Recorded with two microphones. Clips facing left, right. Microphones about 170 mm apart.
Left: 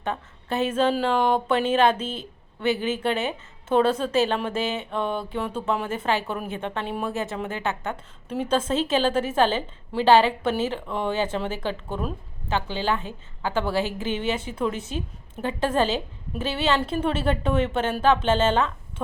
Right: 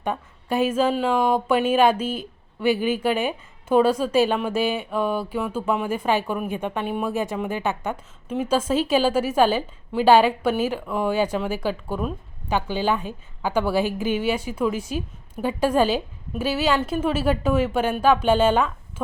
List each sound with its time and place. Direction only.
0.0 s a woman's voice: 10° right (ahead or behind)